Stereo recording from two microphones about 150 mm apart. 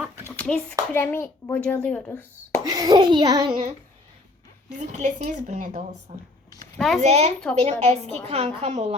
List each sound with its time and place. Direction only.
0.3 s hands: 15° left (ahead or behind)
0.9 s a woman's voice: 15° left (ahead or behind)
2.6 s a child's voice: 25° right (ahead or behind)
3.5 s child singing: 55° right (ahead or behind)
4.8 s a woman's voice: 55° right (ahead or behind)
6.7 s speech: centre (ahead or behind)
7.0 s a woman's voice: 45° right (ahead or behind)